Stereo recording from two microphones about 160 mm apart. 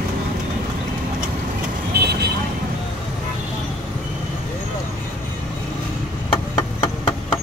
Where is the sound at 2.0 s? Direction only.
85° right.